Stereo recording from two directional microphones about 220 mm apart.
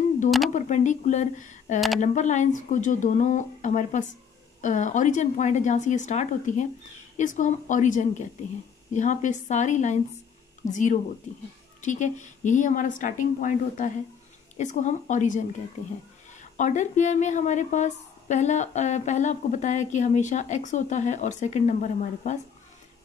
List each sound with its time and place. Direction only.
0.5 s a woman's voice: 35° left (ahead or behind)
16.5 s a woman's voice: 35° left (ahead or behind)